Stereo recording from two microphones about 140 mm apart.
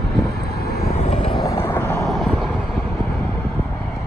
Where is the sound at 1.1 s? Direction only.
40° left (ahead or behind).